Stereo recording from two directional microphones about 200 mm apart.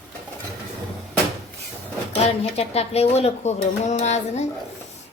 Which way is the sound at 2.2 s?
30° left (ahead or behind).